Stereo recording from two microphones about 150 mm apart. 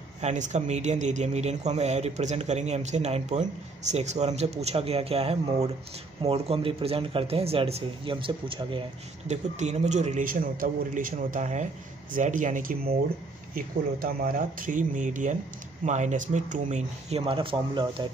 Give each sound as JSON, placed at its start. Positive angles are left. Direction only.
{"t": 0.2, "sound": "speech", "side_deg": -50}
{"t": 9.3, "sound": "speech", "side_deg": -50}
{"t": 17.2, "sound": "speech", "side_deg": -35}